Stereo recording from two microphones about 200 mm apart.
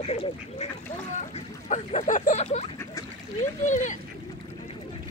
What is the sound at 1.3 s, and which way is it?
Speech, 35° left (ahead or behind).